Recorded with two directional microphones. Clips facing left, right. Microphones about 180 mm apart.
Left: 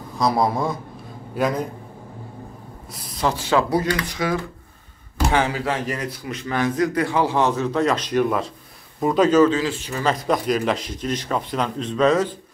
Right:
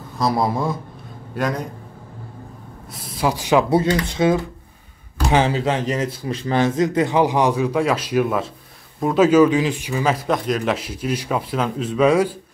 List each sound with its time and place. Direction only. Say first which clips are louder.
0.2 s speech: even; centre (ahead or behind)
3.0 s a man's voice: right 2 dB; 5° right (ahead or behind)